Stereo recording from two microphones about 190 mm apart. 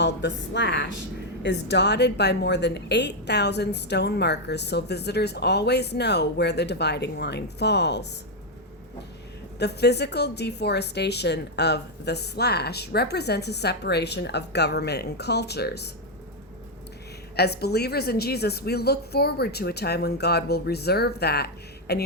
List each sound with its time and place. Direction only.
0.0 s a woman's voice: 65° left (ahead or behind)
9.6 s a woman's voice: 60° left (ahead or behind)
17.3 s a woman's voice: 60° left (ahead or behind)